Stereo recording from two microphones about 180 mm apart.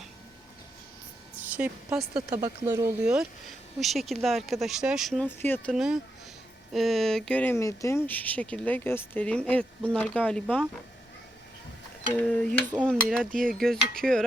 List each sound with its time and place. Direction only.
1.5 s a woman's voice: 5° right (ahead or behind)
2.3 s speech: 15° right (ahead or behind)
3.8 s speech: centre (ahead or behind)
5.7 s speech: 5° right (ahead or behind)
12.1 s speech: 5° left (ahead or behind)